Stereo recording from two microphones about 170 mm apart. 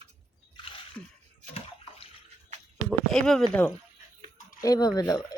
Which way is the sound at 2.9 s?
5° left (ahead or behind).